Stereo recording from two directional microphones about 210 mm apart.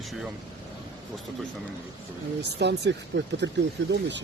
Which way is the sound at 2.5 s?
55° right (ahead or behind).